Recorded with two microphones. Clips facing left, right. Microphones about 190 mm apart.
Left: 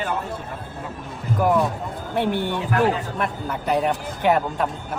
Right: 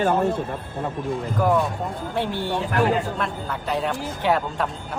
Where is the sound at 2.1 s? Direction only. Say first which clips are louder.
Left 4 dB; 55° left (ahead or behind).